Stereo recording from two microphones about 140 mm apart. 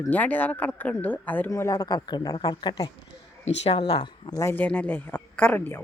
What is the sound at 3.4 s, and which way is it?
Speech, 45° left (ahead or behind).